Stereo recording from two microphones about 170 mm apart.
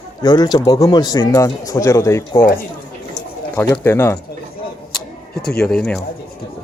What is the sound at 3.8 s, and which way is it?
Speech, 15° left (ahead or behind).